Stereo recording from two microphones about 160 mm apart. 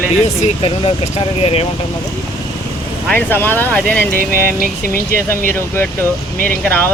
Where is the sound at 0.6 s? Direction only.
35° left (ahead or behind).